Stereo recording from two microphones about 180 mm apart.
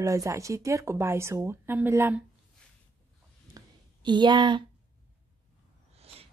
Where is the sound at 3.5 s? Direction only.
25° right (ahead or behind).